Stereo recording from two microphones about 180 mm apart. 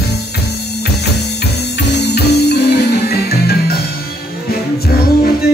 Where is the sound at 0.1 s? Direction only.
65° left (ahead or behind).